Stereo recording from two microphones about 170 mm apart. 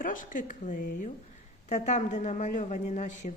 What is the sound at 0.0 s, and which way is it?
A woman's voice, 50° left (ahead or behind).